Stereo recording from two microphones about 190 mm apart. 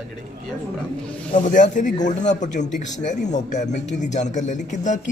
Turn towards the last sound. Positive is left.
turn(degrees=40)  # may be behind; listen again after turning